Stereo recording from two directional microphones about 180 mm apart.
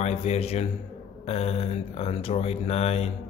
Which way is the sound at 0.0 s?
35° left (ahead or behind).